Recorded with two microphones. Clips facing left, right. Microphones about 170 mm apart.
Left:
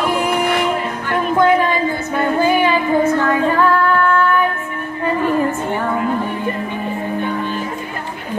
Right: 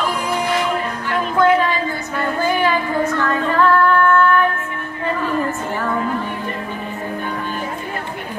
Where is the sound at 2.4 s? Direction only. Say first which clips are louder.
Left 2 dB; 15° left (ahead or behind).